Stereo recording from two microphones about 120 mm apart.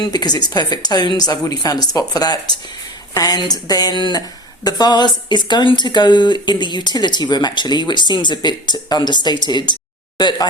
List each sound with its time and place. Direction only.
0.0 s speech: 35° left (ahead or behind)